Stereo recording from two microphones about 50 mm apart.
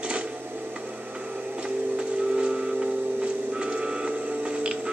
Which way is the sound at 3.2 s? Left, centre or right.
Right.